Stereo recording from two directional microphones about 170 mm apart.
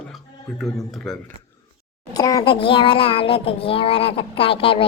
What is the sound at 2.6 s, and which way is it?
Child singing, 30° left (ahead or behind).